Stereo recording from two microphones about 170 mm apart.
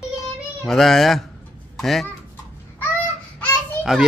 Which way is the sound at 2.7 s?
10° left (ahead or behind).